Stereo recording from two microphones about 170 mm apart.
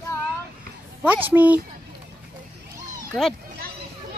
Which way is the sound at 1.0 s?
10° right (ahead or behind).